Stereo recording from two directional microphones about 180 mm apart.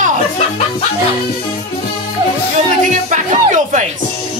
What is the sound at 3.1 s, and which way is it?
Speech, 45° right (ahead or behind).